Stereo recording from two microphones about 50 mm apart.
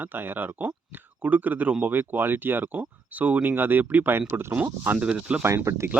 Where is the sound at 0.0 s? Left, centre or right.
Right.